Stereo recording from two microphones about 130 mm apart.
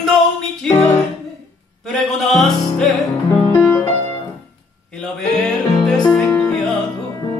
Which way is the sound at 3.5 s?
15° left (ahead or behind).